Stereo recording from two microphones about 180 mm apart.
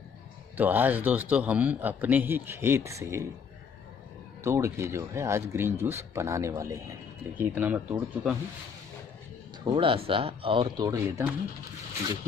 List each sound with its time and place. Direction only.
0.6 s a man's voice: 10° right (ahead or behind)
4.4 s a man's voice: 15° right (ahead or behind)
9.7 s speech: 30° right (ahead or behind)